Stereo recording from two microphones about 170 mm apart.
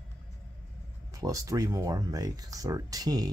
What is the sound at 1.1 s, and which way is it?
Speech, 20° right (ahead or behind).